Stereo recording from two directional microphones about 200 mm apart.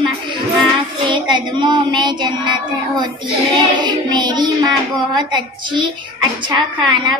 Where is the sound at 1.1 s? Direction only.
25° right (ahead or behind).